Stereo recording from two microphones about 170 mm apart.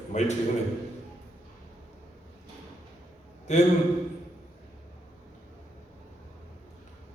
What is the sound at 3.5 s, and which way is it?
Speech, 40° left (ahead or behind).